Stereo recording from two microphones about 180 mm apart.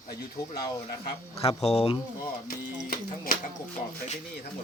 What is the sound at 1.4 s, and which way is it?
Speech, 35° left (ahead or behind).